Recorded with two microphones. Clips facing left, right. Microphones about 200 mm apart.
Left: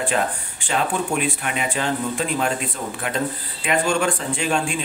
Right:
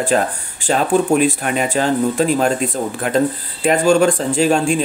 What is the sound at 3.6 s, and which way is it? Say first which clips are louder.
Speech: right 8 dB; 40° right (ahead or behind).